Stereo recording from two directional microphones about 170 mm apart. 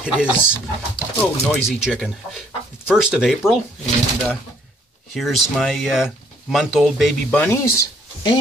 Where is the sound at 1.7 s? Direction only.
Centre (ahead or behind).